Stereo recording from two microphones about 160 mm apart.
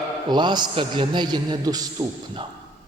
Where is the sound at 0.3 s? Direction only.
30° right (ahead or behind).